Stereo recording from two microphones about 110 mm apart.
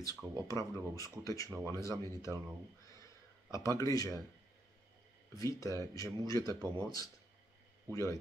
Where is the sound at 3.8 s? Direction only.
30° left (ahead or behind).